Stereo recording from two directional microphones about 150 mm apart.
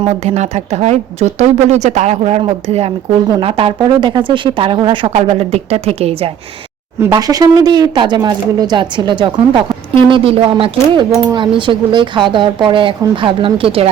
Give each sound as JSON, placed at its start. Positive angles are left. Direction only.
{"t": 0.0, "sound": "speech", "side_deg": -45}
{"t": 7.1, "sound": "speech", "side_deg": -25}